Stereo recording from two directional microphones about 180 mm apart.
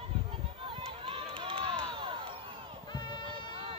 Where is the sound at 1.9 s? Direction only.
30° right (ahead or behind).